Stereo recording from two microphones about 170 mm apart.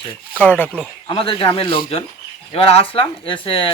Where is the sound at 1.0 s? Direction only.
30° left (ahead or behind).